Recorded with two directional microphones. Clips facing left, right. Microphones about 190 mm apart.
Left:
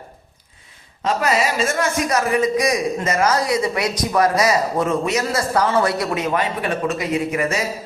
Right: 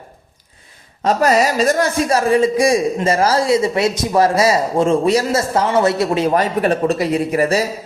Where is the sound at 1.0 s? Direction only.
40° right (ahead or behind).